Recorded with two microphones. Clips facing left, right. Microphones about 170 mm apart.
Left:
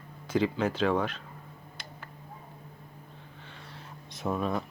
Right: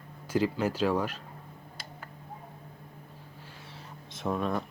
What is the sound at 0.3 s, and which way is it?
Speech, 5° right (ahead or behind).